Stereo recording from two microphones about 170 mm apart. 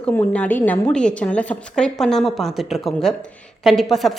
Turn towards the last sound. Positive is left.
turn(degrees=0)  # may be behind; listen again after turning